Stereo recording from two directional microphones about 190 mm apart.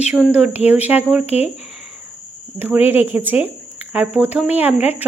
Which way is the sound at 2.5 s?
10° right (ahead or behind).